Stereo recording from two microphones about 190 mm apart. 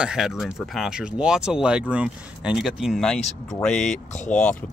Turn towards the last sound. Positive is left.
turn(degrees=40)  # may be behind; listen again after turning